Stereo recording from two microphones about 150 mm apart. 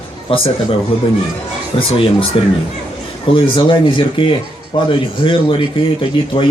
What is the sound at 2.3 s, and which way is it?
Speech, 40° left (ahead or behind).